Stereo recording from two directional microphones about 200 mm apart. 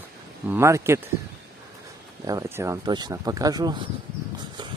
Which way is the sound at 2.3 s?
15° right (ahead or behind).